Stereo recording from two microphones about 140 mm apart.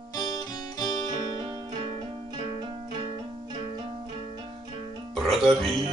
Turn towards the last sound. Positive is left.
turn(degrees=0)  # may be behind; listen again after turning